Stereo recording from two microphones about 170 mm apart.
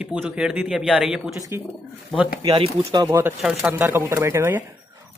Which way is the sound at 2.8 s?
20° right (ahead or behind).